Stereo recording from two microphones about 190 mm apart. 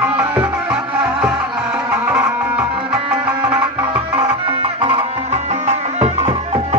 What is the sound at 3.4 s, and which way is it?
Music, 25° right (ahead or behind).